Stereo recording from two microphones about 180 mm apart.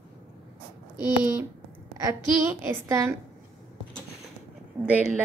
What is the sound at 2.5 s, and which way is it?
Speech, 15° right (ahead or behind).